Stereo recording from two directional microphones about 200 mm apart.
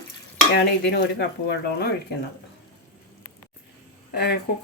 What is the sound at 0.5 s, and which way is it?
Stir, 60° left (ahead or behind).